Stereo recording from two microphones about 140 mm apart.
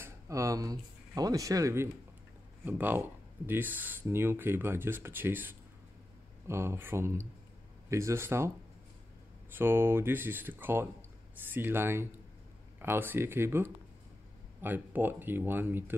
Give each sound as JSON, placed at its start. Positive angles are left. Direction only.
{"t": 0.0, "sound": "speech", "side_deg": -25}
{"t": 9.5, "sound": "speech", "side_deg": -15}